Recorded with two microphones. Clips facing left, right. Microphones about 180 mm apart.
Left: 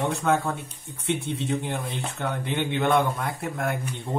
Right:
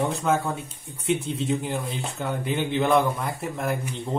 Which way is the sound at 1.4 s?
Centre (ahead or behind).